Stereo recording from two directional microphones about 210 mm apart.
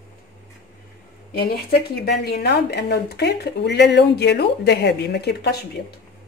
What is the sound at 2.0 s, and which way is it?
Speech, 50° left (ahead or behind).